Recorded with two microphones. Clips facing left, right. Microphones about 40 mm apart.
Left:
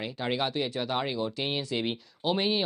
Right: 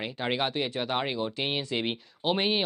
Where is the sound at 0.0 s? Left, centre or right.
Right.